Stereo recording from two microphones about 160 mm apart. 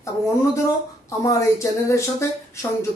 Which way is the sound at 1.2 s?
20° left (ahead or behind).